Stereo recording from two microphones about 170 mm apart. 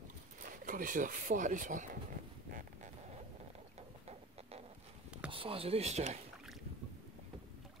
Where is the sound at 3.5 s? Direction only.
40° right (ahead or behind).